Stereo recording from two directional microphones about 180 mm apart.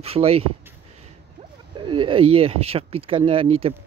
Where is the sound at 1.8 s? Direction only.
25° right (ahead or behind).